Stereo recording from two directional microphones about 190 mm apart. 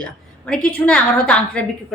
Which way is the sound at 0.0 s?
5° left (ahead or behind).